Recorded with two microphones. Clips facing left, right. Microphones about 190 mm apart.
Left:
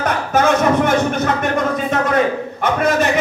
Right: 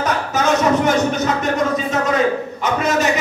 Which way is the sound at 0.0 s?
55° left (ahead or behind).